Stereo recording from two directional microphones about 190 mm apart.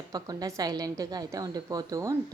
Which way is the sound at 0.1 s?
20° right (ahead or behind).